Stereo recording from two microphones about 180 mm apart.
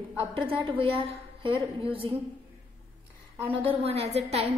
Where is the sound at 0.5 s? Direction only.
30° right (ahead or behind).